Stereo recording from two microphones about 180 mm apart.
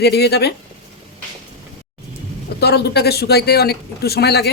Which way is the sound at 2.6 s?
60° left (ahead or behind).